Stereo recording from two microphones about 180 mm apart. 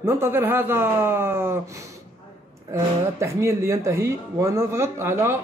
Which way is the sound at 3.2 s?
15° right (ahead or behind).